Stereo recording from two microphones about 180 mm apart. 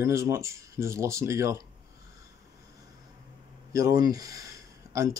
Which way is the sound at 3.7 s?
20° right (ahead or behind).